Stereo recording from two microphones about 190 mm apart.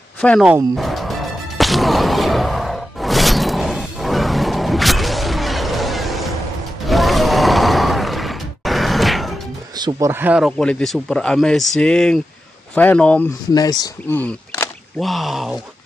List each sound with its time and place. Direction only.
0.2 s speech: 5° left (ahead or behind)
0.7 s music: centre (ahead or behind)
6.9 s a sound: centre (ahead or behind)
9.8 s speech: 20° right (ahead or behind); by 13.3 s 5° left (ahead or behind)
13.5 s speech: 20° left (ahead or behind)
14.1 s a sound: 10° left (ahead or behind)
15.0 s speech: centre (ahead or behind)